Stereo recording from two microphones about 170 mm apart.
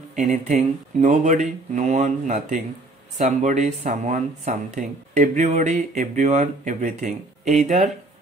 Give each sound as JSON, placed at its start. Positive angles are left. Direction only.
{"t": 0.1, "sound": "speech", "side_deg": -45}